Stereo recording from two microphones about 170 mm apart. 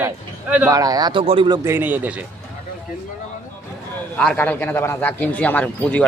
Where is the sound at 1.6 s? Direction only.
10° right (ahead or behind).